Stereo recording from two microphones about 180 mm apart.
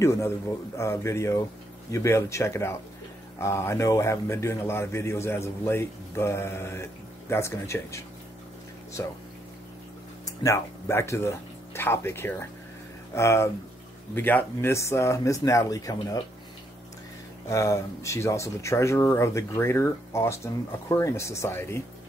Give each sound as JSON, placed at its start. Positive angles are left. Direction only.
{"t": 0.0, "sound": "a man's voice", "side_deg": 15}
{"t": 10.2, "sound": "a man's voice", "side_deg": 15}
{"t": 17.5, "sound": "a man's voice", "side_deg": 15}